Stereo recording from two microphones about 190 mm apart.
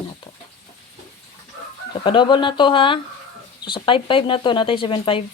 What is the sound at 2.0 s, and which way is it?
Speech, 25° left (ahead or behind).